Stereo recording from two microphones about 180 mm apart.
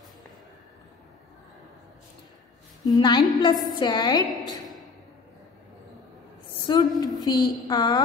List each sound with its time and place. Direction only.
2.8 s a woman's voice: 25° left (ahead or behind)
6.7 s a woman's voice: 25° left (ahead or behind)